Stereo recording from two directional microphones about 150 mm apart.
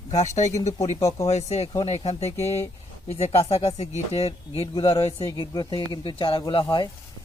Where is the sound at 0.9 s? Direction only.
25° left (ahead or behind).